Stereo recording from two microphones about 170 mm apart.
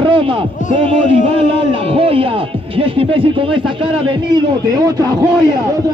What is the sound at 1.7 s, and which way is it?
A man's voice, 30° right (ahead or behind).